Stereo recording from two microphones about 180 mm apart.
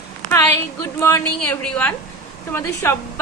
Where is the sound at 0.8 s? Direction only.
15° left (ahead or behind).